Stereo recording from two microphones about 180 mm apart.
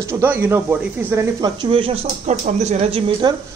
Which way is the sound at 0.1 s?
10° right (ahead or behind).